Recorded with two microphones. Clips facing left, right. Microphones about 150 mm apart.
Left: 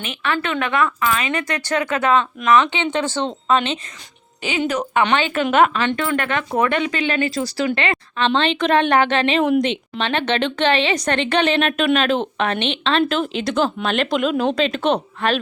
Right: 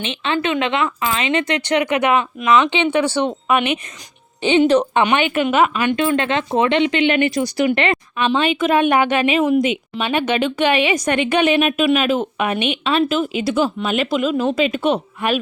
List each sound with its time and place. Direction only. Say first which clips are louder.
0.0 s a woman's voice: right 3 dB; 25° right (ahead or behind)
4.7 s speech: right 5 dB; 30° right (ahead or behind)
5.0 s a woman's voice: right 2 dB; 15° right (ahead or behind)